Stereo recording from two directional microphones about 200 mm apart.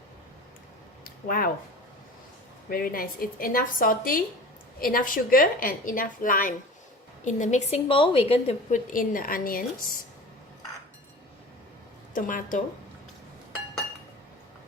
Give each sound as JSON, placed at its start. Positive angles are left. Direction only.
{"t": 1.0, "sound": "a sound", "side_deg": 50}
{"t": 2.6, "sound": "a woman's voice", "side_deg": 45}
{"t": 12.1, "sound": "a woman's voice", "side_deg": 40}